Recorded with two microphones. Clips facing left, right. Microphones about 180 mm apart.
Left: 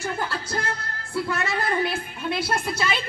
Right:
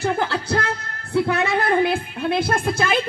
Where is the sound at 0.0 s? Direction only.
65° right (ahead or behind).